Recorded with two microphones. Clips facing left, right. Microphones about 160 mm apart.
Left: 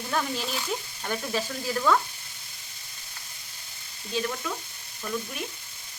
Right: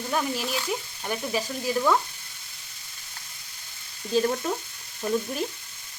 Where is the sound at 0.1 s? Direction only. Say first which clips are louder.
Right 2 dB; 10° right (ahead or behind).